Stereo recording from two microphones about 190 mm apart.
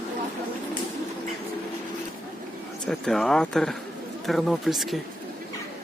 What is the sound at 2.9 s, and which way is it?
Speech, centre (ahead or behind).